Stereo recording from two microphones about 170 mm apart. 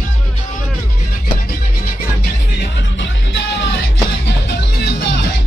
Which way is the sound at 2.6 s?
90° left.